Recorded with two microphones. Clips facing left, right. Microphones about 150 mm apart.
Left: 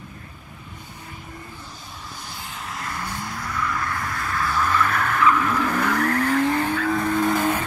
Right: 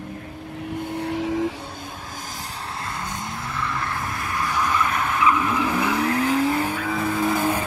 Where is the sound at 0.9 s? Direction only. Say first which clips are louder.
Right 18 dB; 80° right.